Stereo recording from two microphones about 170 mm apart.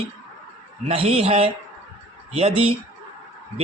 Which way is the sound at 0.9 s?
35° right (ahead or behind).